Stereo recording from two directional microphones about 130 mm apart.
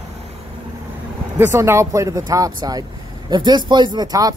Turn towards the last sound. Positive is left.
turn(degrees=-30)  # may be behind; listen again after turning